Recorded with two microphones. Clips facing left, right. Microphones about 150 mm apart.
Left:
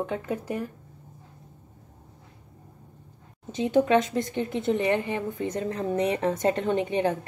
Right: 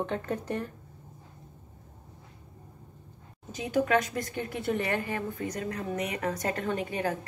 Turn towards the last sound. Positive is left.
turn(degrees=25)  # may be behind; listen again after turning